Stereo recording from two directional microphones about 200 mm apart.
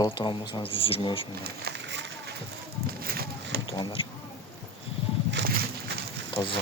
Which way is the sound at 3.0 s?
50° right (ahead or behind).